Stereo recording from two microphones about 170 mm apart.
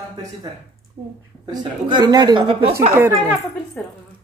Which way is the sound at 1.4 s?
25° right (ahead or behind).